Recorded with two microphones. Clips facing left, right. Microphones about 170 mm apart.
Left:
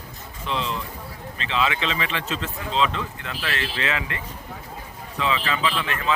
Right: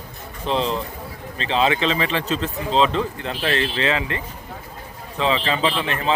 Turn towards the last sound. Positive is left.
turn(degrees=-30)  # may be behind; listen again after turning